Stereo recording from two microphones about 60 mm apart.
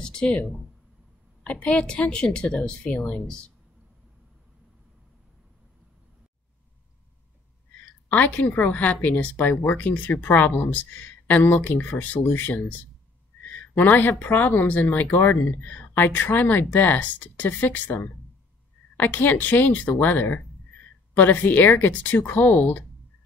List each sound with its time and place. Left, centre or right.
0.0 s a woman's voice: centre
2.9 s speech: centre
3.2 s a woman's voice: centre
8.1 s speech: left
18.9 s speech: left